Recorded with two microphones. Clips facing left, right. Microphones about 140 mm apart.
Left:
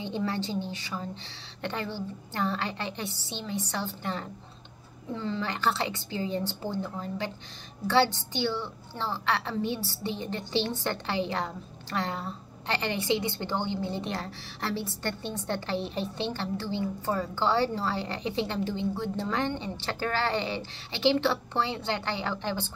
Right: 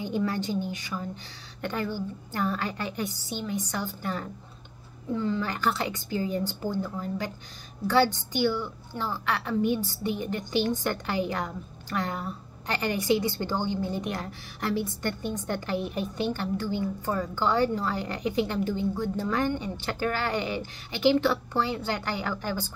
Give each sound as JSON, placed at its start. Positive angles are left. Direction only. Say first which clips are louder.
{"t": 0.0, "sound": "a woman's voice", "louder": "right 2 dB", "side_deg": 25}